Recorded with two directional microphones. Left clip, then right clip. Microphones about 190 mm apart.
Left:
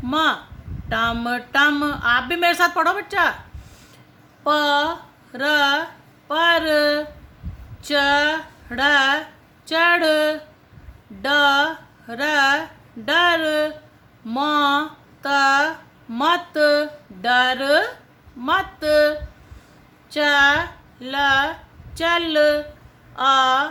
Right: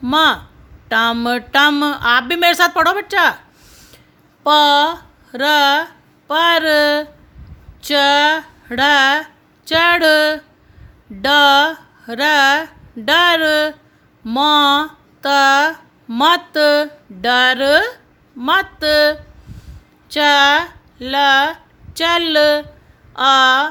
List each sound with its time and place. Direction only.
0.0 s speech: 50° right (ahead or behind)
4.4 s a woman's voice: 50° right (ahead or behind)